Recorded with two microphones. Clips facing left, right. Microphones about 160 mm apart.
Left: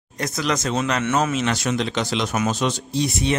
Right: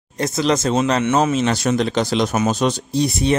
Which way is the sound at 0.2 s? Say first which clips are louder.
Right 6 dB; 25° right (ahead or behind).